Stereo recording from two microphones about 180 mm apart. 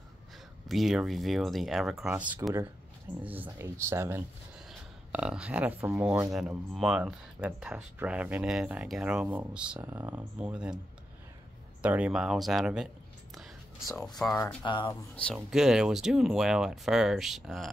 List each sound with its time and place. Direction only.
0.7 s speech: centre (ahead or behind)
11.8 s speech: 5° right (ahead or behind)
14.6 s speech: 25° left (ahead or behind)
15.1 s speech: centre (ahead or behind)